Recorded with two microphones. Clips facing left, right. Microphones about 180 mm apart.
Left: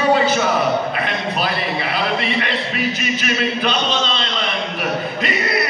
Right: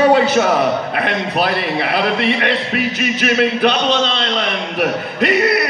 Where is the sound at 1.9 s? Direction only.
60° right (ahead or behind).